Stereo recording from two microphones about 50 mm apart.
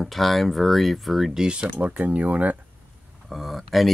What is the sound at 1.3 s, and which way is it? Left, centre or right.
Speech, centre.